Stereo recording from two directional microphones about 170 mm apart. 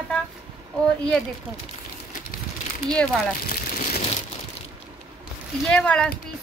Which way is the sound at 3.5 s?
55° left (ahead or behind).